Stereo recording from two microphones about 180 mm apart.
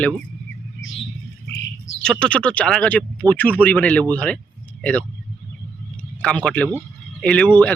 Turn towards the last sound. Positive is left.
turn(degrees=10)  # may be behind; listen again after turning